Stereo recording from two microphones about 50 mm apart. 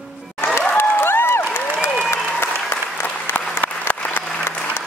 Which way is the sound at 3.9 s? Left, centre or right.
Left.